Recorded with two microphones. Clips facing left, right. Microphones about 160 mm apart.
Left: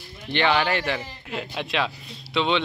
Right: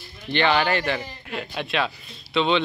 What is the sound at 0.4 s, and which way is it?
Speech, 5° left (ahead or behind).